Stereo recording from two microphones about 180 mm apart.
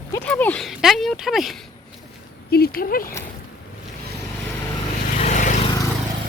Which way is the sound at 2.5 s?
55° left (ahead or behind).